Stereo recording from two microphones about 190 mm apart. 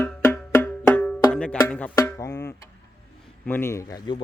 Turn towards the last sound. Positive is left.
turn(degrees=20)  # may be behind; listen again after turning